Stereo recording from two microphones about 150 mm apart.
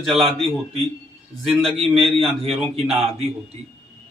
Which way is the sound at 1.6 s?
40° right (ahead or behind).